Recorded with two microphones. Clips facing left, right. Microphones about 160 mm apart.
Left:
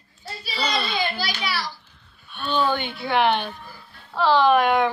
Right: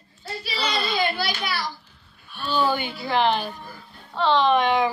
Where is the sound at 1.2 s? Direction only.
50° right (ahead or behind).